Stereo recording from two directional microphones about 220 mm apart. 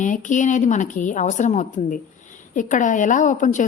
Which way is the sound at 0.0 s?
35° left (ahead or behind).